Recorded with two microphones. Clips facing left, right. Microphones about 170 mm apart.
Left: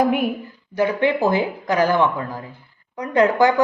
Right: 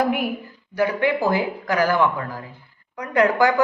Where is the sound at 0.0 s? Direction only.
20° left (ahead or behind).